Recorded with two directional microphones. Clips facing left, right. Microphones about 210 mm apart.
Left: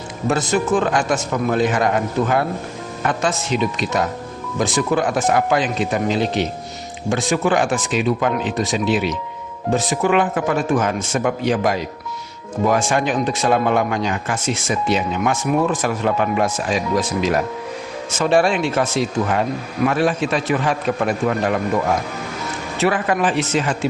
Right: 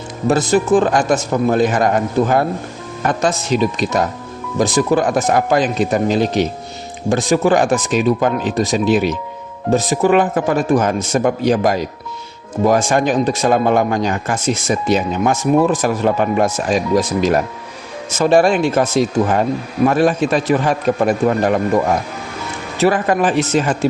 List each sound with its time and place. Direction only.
0.3 s speech: 35° right (ahead or behind)
22.8 s speech: 40° right (ahead or behind)